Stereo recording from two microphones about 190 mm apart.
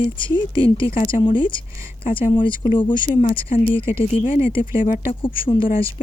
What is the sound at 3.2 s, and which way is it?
Speech, 35° left (ahead or behind).